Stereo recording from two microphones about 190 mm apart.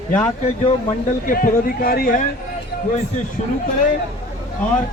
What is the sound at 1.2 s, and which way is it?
Speech, 50° left (ahead or behind).